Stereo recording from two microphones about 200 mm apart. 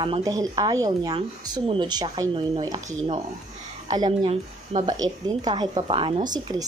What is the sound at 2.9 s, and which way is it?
A woman's voice, 30° right (ahead or behind).